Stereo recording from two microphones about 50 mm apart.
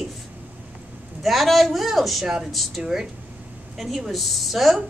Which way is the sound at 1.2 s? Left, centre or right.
Centre.